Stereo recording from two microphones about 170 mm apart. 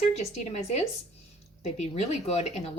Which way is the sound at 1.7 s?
40° left (ahead or behind).